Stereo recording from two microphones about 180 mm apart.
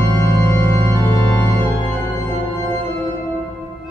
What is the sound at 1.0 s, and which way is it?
Organ, 25° right (ahead or behind).